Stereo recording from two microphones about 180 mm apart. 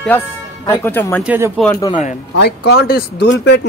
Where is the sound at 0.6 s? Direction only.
15° left (ahead or behind).